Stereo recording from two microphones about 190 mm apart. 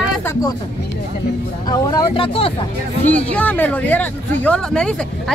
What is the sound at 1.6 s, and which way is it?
Speech, 25° left (ahead or behind).